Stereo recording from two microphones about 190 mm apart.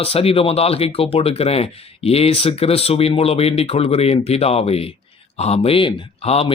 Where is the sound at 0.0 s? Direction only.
30° left (ahead or behind).